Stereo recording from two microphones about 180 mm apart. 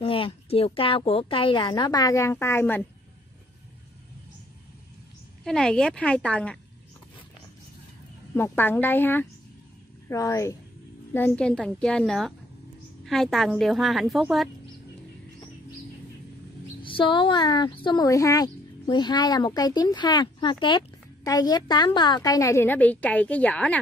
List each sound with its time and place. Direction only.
0.0 s speech: 30° left (ahead or behind); by 2.8 s 10° left (ahead or behind)
5.4 s a woman's voice: 5° left (ahead or behind)
8.4 s a woman's voice: 10° left (ahead or behind)
16.8 s speech: 30° left (ahead or behind); by 23.8 s 5° left (ahead or behind)